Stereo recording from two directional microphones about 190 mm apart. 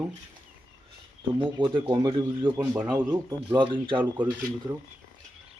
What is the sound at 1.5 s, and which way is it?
Speech, 25° right (ahead or behind).